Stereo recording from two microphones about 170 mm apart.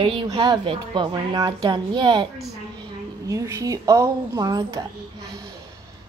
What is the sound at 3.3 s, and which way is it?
A woman's voice, 20° right (ahead or behind).